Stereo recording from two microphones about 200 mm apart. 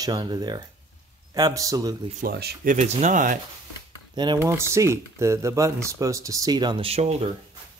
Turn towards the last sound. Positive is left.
turn(degrees=-30)  # may be behind; listen again after turning